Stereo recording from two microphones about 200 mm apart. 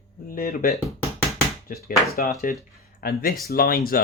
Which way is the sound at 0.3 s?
45° left (ahead or behind).